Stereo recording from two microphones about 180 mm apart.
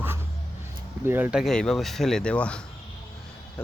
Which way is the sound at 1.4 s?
5° left (ahead or behind).